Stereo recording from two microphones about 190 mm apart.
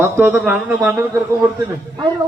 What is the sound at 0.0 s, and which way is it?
Speech, 10° right (ahead or behind).